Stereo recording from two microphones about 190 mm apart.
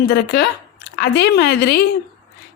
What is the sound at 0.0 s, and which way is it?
Speech, 60° left (ahead or behind).